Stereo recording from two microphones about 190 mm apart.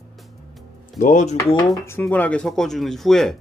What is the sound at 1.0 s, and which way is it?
Speech, 40° left (ahead or behind).